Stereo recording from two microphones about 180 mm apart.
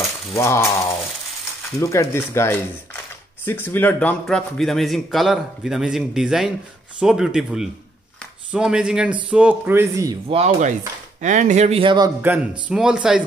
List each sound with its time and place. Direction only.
0.3 s speech: 15° left (ahead or behind)
1.8 s a man's voice: 15° left (ahead or behind); by 10.1 s 15° right (ahead or behind)
10.2 s speech: 35° right (ahead or behind)
12.2 s a man's voice: 10° right (ahead or behind)